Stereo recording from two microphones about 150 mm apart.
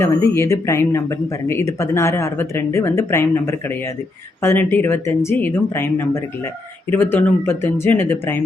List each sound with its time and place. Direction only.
0.0 s speech: 20° left (ahead or behind)